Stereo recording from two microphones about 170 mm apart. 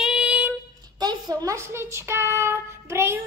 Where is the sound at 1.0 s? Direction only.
25° right (ahead or behind).